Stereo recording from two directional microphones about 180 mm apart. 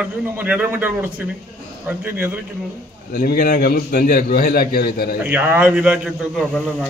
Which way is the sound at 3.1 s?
55° left (ahead or behind).